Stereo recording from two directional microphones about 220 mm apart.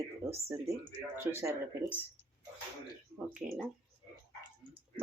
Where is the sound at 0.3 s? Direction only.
15° right (ahead or behind).